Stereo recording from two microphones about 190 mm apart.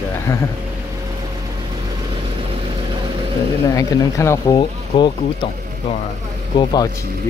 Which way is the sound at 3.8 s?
15° left (ahead or behind).